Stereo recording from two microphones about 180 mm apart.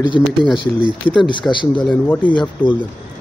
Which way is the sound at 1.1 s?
30° left (ahead or behind).